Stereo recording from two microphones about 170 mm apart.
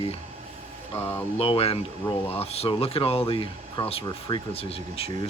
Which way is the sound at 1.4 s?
35° left (ahead or behind).